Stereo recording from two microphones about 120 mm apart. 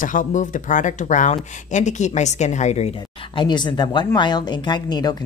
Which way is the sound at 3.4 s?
40° left (ahead or behind).